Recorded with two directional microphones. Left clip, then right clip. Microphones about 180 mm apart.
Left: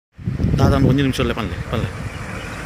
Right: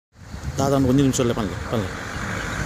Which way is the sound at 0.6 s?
10° right (ahead or behind).